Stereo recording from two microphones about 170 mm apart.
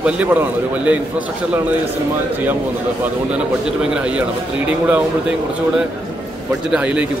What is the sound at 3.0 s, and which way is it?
A man's voice, 5° right (ahead or behind).